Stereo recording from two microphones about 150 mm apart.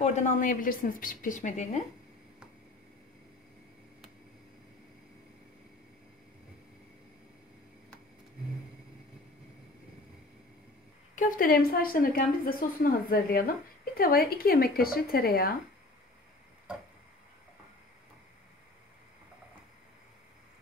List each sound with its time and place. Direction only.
0.0 s speech: 50° left (ahead or behind)
11.1 s a woman's voice: 65° left (ahead or behind); by 15.5 s 90° left